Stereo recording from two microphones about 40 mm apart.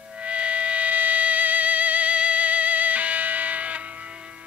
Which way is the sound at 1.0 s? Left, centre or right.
Right.